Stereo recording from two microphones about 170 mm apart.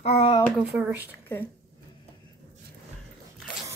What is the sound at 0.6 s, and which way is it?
Speech, 10° right (ahead or behind).